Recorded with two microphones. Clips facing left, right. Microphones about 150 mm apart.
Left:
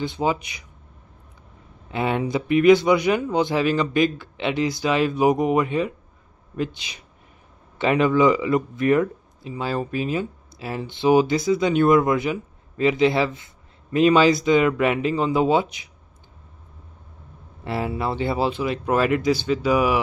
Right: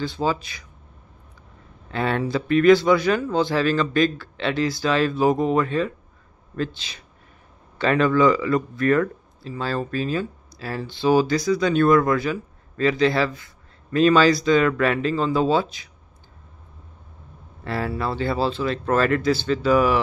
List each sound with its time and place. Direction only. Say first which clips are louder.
0.0 s speech: left 1 dB; 20° left (ahead or behind)
1.9 s speech: even; 15° left (ahead or behind)
17.6 s speech: left 1 dB; 20° left (ahead or behind)